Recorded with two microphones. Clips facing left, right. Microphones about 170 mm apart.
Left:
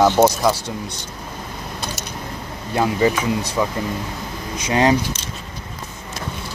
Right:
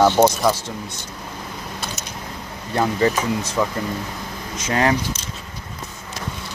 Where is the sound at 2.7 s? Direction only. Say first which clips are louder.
Left 1 dB; 10° left (ahead or behind).